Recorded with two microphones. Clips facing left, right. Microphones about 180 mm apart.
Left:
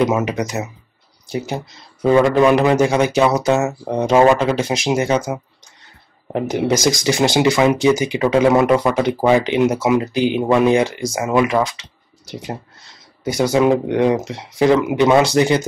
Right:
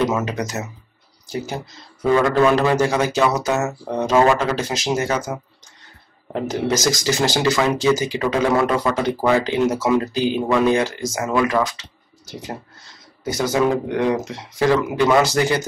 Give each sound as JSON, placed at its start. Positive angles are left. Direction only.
{"t": 0.0, "sound": "speech", "side_deg": 15}
{"t": 2.0, "sound": "speech", "side_deg": 25}
{"t": 3.6, "sound": "speech", "side_deg": 15}
{"t": 6.3, "sound": "speech", "side_deg": 15}
{"t": 13.2, "sound": "speech", "side_deg": 15}